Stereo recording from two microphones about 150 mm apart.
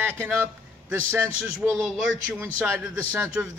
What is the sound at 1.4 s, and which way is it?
A man's voice, 15° right (ahead or behind).